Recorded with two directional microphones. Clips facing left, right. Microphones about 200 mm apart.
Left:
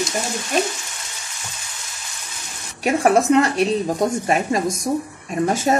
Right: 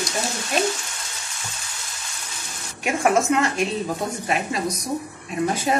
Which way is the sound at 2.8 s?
35° left (ahead or behind).